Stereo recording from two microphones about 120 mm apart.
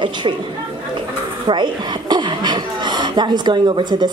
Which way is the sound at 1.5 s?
40° right (ahead or behind).